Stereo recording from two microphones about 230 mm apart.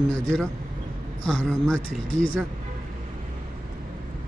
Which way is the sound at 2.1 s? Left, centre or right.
Right.